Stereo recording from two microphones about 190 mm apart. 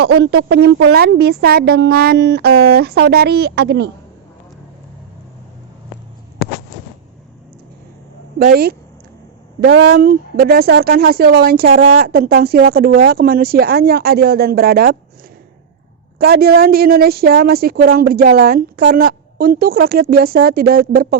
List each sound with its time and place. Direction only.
0.0 s speech: 60° right (ahead or behind)
8.4 s speech: 55° right (ahead or behind)
9.6 s speech: 65° right (ahead or behind)
16.1 s speech: 55° right (ahead or behind)